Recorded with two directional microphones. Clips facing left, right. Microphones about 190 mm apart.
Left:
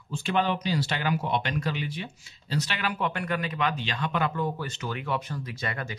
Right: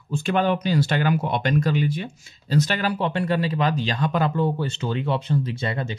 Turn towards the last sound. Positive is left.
turn(degrees=-25)  # may be behind; listen again after turning